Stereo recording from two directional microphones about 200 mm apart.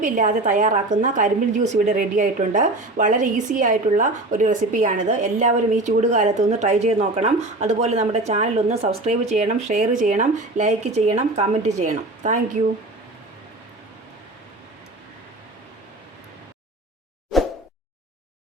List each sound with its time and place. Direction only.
0.0 s a woman's voice: 40° right (ahead or behind)
17.3 s plop: centre (ahead or behind)